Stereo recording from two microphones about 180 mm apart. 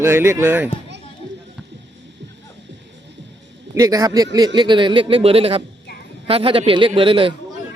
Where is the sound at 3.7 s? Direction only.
20° right (ahead or behind).